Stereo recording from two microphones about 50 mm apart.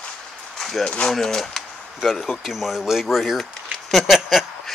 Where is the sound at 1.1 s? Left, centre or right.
Centre.